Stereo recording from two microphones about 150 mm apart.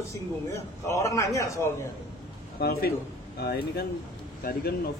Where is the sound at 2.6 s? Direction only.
90° left.